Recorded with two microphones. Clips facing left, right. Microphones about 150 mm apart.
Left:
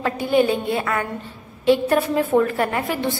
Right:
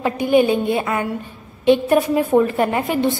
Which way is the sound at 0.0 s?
15° right (ahead or behind).